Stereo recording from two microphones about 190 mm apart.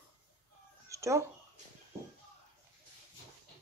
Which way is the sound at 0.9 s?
15° right (ahead or behind).